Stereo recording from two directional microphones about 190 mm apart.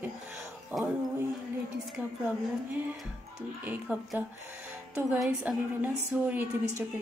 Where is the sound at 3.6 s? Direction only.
5° right (ahead or behind).